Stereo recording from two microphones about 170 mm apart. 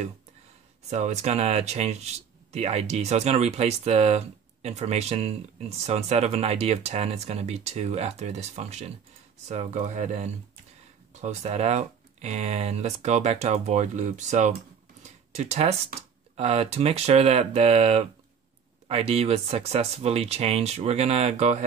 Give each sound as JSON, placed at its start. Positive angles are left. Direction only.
{"t": 0.8, "sound": "speech", "side_deg": -40}
{"t": 15.0, "sound": "a sound", "side_deg": -40}
{"t": 16.3, "sound": "speech", "side_deg": -35}